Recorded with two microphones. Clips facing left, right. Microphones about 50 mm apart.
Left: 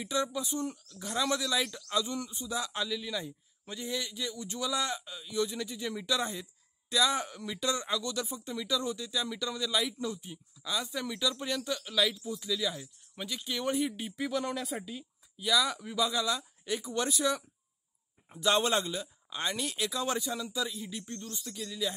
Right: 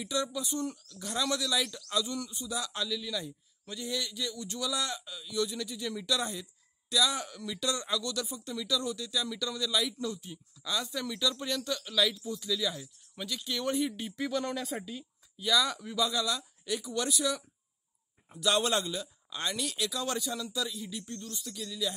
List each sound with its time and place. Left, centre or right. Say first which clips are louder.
0.0 s a man's voice: left 1 dB; left